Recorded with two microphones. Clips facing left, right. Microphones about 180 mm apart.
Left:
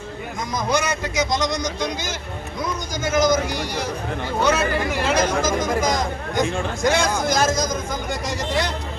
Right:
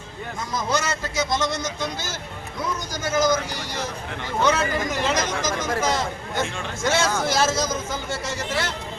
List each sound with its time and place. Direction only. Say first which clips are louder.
0.5 s speech: left 3 dB; 15° left (ahead or behind)
3.2 s speech: left 3 dB; 10° left (ahead or behind)